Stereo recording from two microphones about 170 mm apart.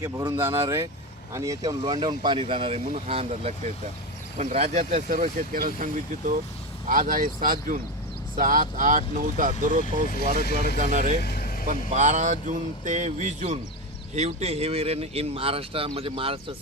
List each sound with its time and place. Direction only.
0.0 s speech: 20° right (ahead or behind); by 11.1 s 50° right (ahead or behind)
11.2 s vehicle: 65° left (ahead or behind)
11.7 s speech: 45° right (ahead or behind)